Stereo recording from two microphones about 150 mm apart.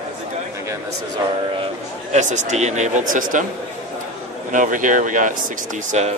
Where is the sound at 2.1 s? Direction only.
55° right (ahead or behind).